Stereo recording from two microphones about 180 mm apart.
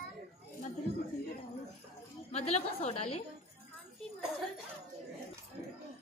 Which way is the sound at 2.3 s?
40° left (ahead or behind).